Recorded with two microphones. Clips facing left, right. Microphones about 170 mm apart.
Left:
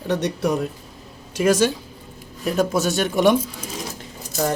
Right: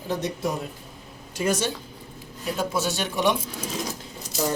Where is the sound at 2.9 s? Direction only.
50° left (ahead or behind).